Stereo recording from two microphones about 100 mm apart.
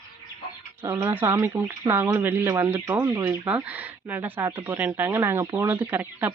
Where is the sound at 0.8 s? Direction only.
30° right (ahead or behind).